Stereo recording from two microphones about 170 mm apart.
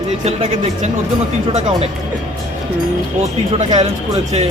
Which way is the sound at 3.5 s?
40° right (ahead or behind).